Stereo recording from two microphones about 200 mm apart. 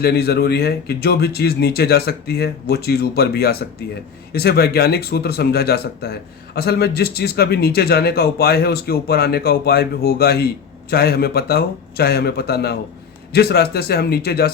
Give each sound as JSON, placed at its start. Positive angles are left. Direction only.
{"t": 0.0, "sound": "speech", "side_deg": 50}